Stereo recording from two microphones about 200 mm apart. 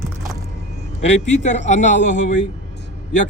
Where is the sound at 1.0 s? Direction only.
35° left (ahead or behind).